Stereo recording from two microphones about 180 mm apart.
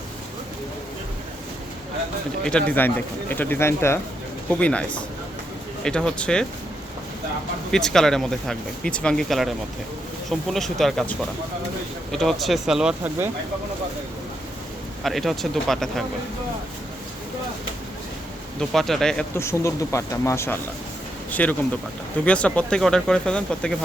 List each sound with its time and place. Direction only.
2.4 s speech: 5° left (ahead or behind)
7.7 s speech: 5° left (ahead or behind)
15.0 s speech: centre (ahead or behind)
18.6 s speech: centre (ahead or behind)
19.4 s speech: 15° left (ahead or behind)